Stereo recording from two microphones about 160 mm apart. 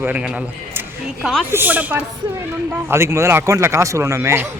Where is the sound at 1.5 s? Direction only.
10° right (ahead or behind).